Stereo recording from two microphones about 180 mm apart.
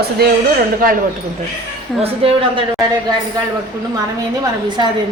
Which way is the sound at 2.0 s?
30° right (ahead or behind).